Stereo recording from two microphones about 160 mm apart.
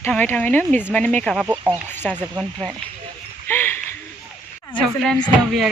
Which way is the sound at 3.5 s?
15° left (ahead or behind).